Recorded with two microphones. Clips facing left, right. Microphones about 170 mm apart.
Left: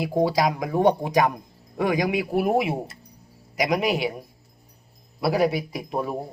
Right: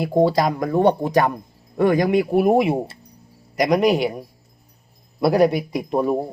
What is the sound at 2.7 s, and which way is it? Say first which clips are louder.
Speech: right 6 dB; 30° right (ahead or behind).